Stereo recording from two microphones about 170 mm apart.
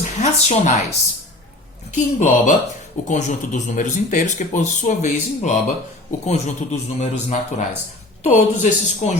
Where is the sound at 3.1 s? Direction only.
45° left (ahead or behind).